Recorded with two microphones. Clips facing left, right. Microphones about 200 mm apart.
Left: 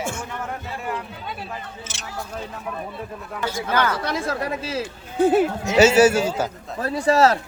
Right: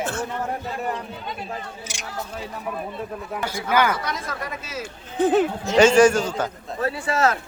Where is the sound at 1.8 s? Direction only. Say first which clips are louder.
Right 1 dB; 10° right (ahead or behind).